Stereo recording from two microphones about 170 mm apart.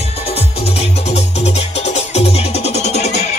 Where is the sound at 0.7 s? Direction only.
40° left (ahead or behind).